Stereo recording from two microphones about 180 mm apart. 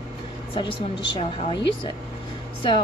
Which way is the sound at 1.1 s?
25° left (ahead or behind).